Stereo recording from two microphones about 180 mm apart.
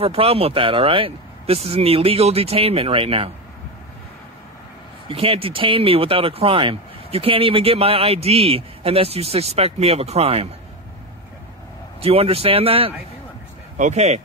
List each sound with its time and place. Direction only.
0.0 s speech: 30° right (ahead or behind)
5.0 s speech: 30° right (ahead or behind)
12.0 s speech: 35° right (ahead or behind)